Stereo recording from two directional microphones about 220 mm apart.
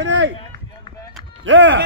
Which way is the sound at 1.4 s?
55° right (ahead or behind).